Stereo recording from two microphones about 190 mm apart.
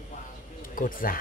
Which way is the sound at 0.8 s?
45° left (ahead or behind).